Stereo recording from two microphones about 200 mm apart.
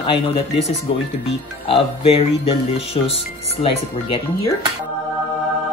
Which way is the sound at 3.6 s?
25° left (ahead or behind).